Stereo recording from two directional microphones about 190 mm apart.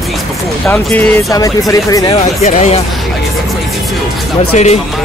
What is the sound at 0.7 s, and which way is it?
Speech, 10° left (ahead or behind).